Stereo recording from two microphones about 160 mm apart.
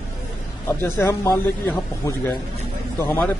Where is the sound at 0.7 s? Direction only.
15° left (ahead or behind).